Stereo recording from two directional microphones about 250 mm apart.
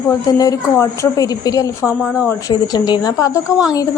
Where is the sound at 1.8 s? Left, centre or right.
Centre.